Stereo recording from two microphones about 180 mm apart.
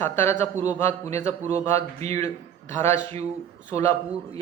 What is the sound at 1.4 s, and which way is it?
Speech, 40° right (ahead or behind).